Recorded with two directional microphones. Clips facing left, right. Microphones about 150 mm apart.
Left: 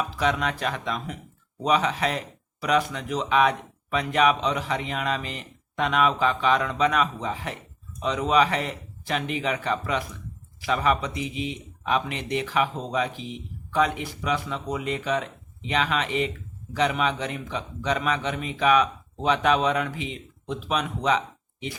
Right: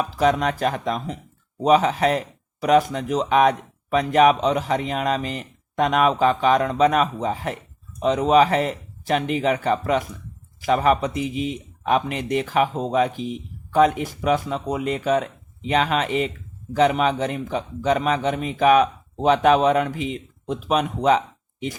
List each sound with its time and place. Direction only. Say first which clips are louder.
0.0 s speech: right 5 dB; 40° right (ahead or behind)